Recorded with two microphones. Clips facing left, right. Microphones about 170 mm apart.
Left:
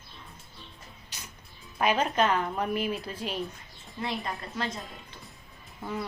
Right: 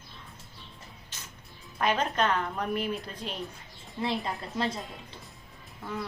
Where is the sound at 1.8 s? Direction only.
10° left (ahead or behind).